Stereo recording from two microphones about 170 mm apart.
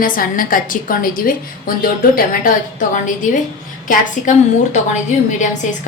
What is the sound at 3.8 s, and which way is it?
Speech, 45° left (ahead or behind).